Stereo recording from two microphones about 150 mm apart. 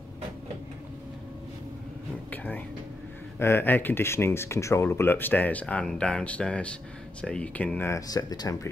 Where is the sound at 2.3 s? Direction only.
10° left (ahead or behind).